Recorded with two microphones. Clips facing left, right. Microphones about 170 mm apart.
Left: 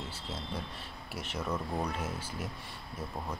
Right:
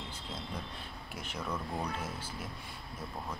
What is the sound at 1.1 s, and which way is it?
Speech, 5° left (ahead or behind).